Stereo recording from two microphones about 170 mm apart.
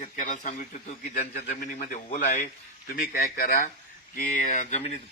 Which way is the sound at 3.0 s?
55° left (ahead or behind).